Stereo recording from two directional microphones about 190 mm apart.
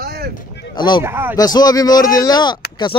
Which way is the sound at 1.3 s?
20° left (ahead or behind).